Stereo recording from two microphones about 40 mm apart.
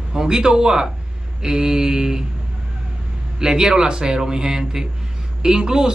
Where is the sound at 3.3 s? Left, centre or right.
Centre.